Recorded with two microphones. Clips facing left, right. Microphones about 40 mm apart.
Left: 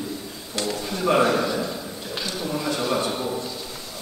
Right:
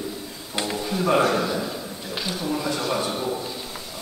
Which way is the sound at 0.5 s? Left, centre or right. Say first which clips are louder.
Even; centre.